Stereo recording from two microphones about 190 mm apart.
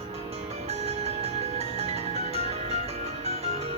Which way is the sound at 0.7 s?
35° right (ahead or behind).